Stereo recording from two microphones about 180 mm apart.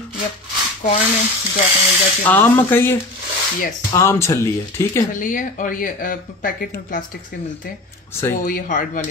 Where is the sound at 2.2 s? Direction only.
10° left (ahead or behind).